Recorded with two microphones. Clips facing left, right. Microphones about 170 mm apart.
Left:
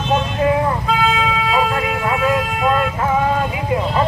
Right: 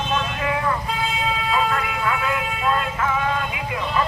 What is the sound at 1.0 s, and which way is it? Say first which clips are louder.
Vehicle: left 6 dB; 90° left.